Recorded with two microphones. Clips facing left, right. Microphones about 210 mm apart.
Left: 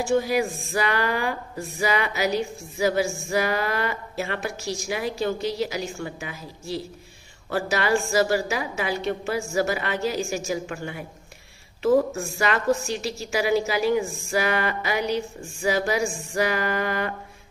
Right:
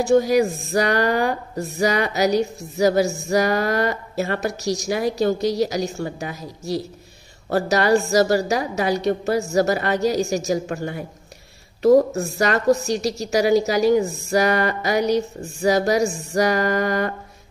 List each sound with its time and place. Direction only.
0.0 s a woman's voice: 40° right (ahead or behind)
16.3 s music: 40° right (ahead or behind)